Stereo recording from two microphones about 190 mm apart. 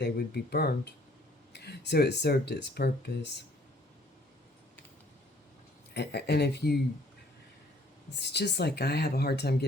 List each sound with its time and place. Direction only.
0.0 s speech: 55° left (ahead or behind)
5.9 s speech: 60° left (ahead or behind)
8.1 s speech: 60° left (ahead or behind)